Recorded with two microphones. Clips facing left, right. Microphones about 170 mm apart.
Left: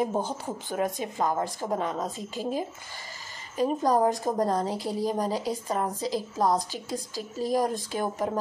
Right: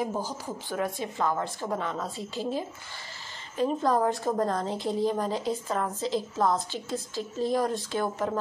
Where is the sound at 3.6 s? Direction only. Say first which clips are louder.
Left 2 dB; 15° left (ahead or behind).